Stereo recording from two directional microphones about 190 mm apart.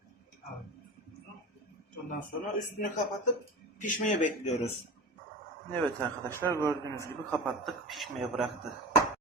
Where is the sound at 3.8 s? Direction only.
40° left (ahead or behind).